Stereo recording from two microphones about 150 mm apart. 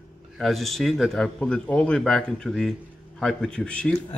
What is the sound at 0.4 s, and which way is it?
Speech, centre (ahead or behind).